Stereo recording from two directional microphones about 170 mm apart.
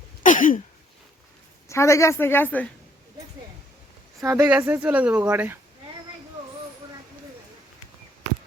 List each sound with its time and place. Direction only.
0.2 s a sound: 50° left (ahead or behind)
1.6 s a woman's voice: 15° left (ahead or behind)
4.2 s speech: 15° right (ahead or behind)